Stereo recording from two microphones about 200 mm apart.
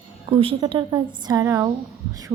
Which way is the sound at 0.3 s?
30° right (ahead or behind).